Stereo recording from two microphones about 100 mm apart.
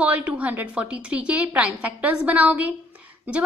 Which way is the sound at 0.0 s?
15° right (ahead or behind).